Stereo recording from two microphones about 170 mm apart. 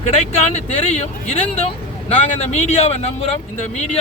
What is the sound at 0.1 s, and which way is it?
Speech, 40° left (ahead or behind).